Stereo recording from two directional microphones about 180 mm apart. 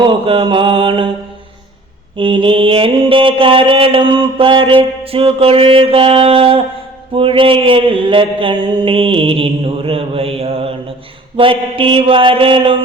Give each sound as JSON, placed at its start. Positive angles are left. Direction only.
{"t": 0.0, "sound": "mantra", "side_deg": -30}
{"t": 2.1, "sound": "mantra", "side_deg": -30}